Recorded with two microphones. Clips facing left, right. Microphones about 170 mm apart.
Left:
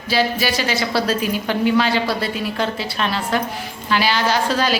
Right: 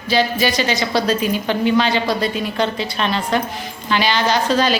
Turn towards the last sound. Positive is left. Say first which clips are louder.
# right 2 dB
turn(degrees=10)  # may be behind; listen again after turning